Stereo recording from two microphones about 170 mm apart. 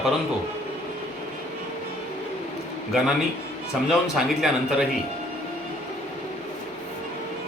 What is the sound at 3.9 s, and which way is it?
Speech, centre (ahead or behind).